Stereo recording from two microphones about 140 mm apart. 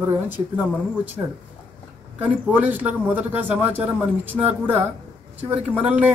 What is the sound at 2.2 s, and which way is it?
Speech, 10° right (ahead or behind).